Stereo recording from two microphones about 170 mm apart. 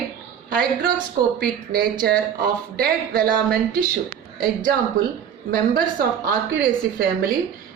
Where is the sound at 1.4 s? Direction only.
65° right (ahead or behind).